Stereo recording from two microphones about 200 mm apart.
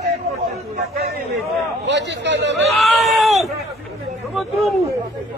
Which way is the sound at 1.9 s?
65° right (ahead or behind).